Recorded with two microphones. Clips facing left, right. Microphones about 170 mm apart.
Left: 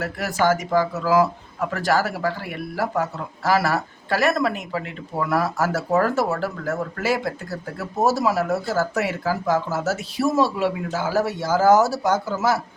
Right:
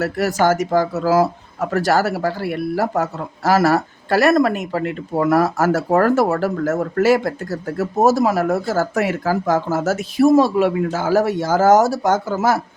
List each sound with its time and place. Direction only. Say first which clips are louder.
0.0 s speech: right 5 dB; 45° right (ahead or behind)